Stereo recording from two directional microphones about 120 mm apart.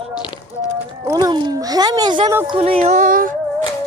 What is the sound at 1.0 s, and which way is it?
A child's voice, 30° right (ahead or behind).